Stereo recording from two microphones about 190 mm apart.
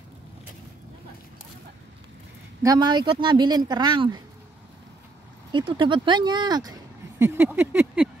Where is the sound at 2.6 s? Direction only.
20° right (ahead or behind).